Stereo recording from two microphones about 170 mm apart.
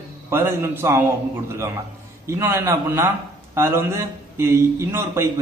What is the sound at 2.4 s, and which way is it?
A man's voice, 15° right (ahead or behind).